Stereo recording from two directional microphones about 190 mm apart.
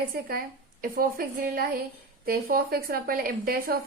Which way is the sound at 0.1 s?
50° right (ahead or behind).